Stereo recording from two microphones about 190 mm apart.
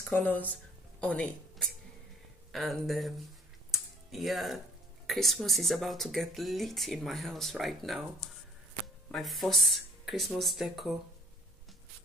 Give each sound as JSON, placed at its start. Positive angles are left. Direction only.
{"t": 0.1, "sound": "a woman's voice", "side_deg": 10}
{"t": 3.7, "sound": "music", "side_deg": 0}
{"t": 5.0, "sound": "speech", "side_deg": 0}
{"t": 9.1, "sound": "speech", "side_deg": 0}